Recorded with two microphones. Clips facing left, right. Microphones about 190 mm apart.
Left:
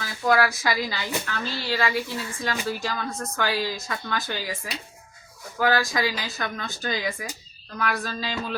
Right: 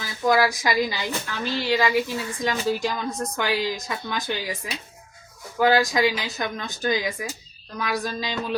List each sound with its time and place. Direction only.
0.0 s speech: 15° right (ahead or behind)